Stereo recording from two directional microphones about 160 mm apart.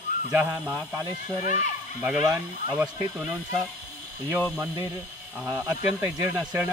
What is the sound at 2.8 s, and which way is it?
Speech, 10° right (ahead or behind).